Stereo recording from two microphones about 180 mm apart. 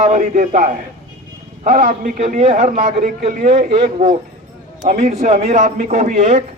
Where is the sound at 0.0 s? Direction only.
45° right (ahead or behind).